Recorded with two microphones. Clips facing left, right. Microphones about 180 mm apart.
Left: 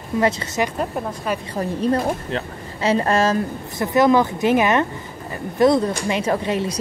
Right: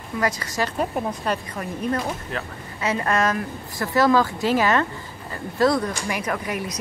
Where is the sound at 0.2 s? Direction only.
25° left (ahead or behind).